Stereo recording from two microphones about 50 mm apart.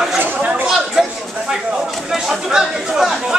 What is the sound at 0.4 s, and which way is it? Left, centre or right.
Chatter, right.